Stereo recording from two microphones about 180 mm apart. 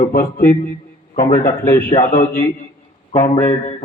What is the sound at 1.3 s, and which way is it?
Speech, 20° left (ahead or behind).